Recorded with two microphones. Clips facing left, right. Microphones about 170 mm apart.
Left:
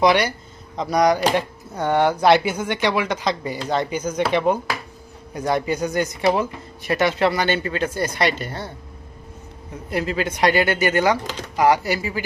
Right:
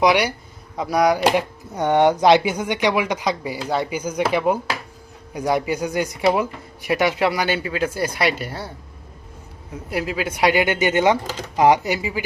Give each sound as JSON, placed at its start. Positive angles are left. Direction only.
{"t": 0.0, "sound": "speech", "side_deg": -10}
{"t": 9.7, "sound": "speech", "side_deg": -5}